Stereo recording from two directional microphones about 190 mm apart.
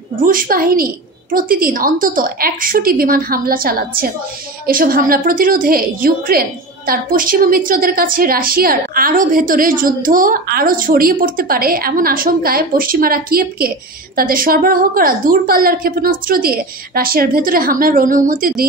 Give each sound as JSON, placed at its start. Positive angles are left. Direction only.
{"t": 0.2, "sound": "a woman's voice", "side_deg": -50}